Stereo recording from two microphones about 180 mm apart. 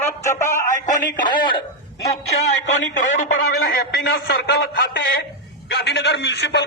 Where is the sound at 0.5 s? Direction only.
45° left (ahead or behind).